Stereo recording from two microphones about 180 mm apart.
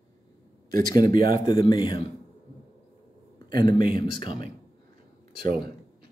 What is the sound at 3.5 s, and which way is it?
Speech, 25° left (ahead or behind).